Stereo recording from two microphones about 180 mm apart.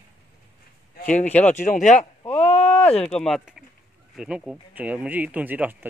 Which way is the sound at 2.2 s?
30° left (ahead or behind).